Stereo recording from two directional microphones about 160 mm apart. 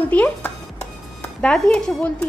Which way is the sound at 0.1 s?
10° left (ahead or behind).